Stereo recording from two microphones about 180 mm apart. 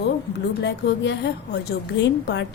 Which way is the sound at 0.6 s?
75° left (ahead or behind).